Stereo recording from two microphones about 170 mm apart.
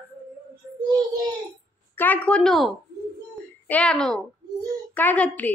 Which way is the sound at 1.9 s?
10° left (ahead or behind).